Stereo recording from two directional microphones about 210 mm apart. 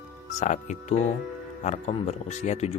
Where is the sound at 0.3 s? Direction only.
35° left (ahead or behind).